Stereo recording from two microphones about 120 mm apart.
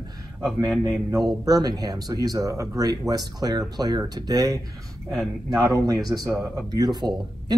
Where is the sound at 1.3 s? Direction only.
30° right (ahead or behind).